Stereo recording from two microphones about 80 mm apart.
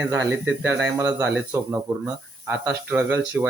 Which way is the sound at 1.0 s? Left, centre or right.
Centre.